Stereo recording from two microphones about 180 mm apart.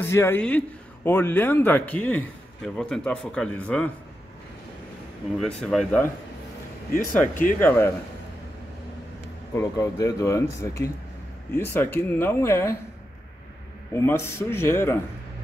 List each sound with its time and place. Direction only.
0.1 s a man's voice: 15° left (ahead or behind)
5.4 s speech: centre (ahead or behind)
6.9 s speech: 50° left (ahead or behind)
7.6 s a man's voice: 15° left (ahead or behind)
9.6 s a man's voice: 20° left (ahead or behind)
13.9 s a man's voice: 15° left (ahead or behind)